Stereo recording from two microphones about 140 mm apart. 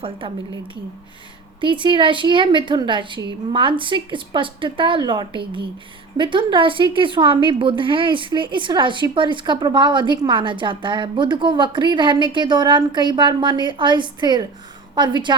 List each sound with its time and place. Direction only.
1.6 s a woman's voice: 35° right (ahead or behind)